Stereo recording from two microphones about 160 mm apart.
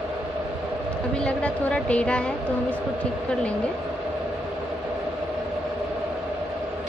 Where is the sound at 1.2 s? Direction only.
5° left (ahead or behind).